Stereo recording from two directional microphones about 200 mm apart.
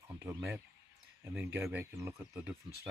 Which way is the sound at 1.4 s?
10° right (ahead or behind).